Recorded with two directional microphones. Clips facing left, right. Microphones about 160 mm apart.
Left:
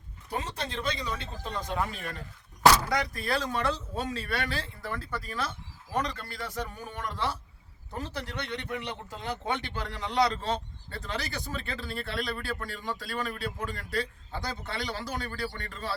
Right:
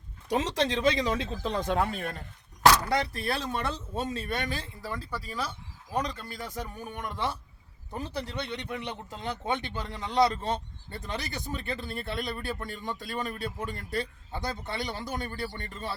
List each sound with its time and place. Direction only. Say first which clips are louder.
0.3 s speech: right 7 dB; 90° right; by 2.2 s 55° right (ahead or behind)
2.9 s speech: right 1 dB; 30° right (ahead or behind)
8.4 s a man's voice: even; 15° right (ahead or behind)